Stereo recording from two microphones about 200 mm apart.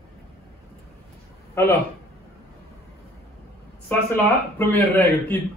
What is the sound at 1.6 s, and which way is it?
Speech, 10° left (ahead or behind).